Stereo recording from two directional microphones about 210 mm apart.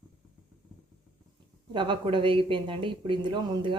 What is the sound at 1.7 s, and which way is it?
Speech, 20° right (ahead or behind).